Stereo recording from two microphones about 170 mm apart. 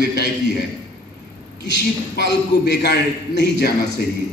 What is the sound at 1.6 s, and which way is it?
A man's voice, 90° left.